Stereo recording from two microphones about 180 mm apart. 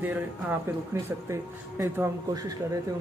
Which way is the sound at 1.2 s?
15° right (ahead or behind).